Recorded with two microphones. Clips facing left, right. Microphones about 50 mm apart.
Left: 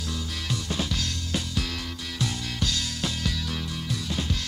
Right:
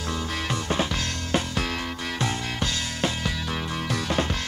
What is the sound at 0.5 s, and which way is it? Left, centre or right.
Music, right.